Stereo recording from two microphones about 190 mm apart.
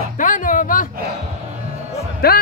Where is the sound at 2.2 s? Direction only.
55° left (ahead or behind).